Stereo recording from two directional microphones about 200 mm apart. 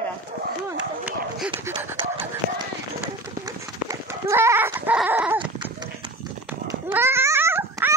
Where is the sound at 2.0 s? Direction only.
25° right (ahead or behind).